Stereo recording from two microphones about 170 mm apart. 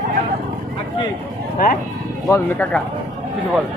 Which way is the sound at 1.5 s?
60° left (ahead or behind).